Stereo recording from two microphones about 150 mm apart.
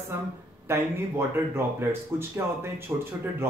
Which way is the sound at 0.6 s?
15° right (ahead or behind).